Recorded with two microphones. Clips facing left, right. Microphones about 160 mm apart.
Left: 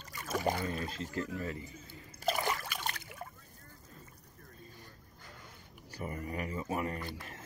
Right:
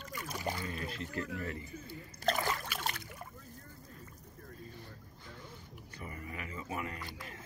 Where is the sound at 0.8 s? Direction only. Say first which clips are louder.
Left 2 dB; 30° left (ahead or behind).